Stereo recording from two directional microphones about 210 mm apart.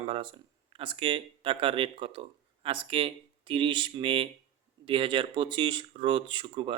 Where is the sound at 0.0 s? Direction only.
25° right (ahead or behind).